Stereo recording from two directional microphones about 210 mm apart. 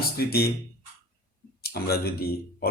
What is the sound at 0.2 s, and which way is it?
Speech, 50° left (ahead or behind).